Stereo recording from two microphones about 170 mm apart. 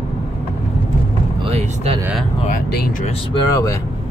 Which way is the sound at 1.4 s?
35° right (ahead or behind).